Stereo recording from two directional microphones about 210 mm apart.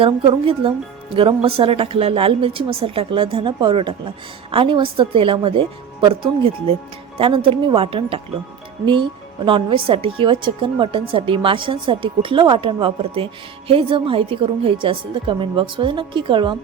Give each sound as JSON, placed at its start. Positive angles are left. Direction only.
{"t": 0.0, "sound": "speech", "side_deg": -25}